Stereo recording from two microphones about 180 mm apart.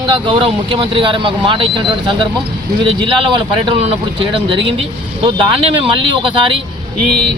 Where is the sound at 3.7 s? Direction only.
30° right (ahead or behind).